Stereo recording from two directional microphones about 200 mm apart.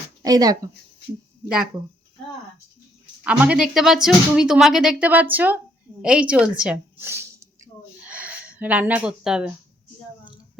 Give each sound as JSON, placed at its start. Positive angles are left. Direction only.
{"t": 0.2, "sound": "speech", "side_deg": -20}
{"t": 1.5, "sound": "speech", "side_deg": -5}
{"t": 3.2, "sound": "speech", "side_deg": -5}
{"t": 6.0, "sound": "a sound", "side_deg": -5}